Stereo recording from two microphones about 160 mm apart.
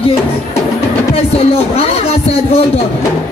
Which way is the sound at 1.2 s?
40° left (ahead or behind).